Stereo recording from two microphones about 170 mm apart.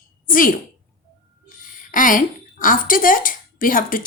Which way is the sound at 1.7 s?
50° left (ahead or behind).